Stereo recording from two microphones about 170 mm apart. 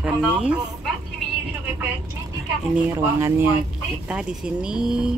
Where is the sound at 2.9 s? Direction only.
15° right (ahead or behind).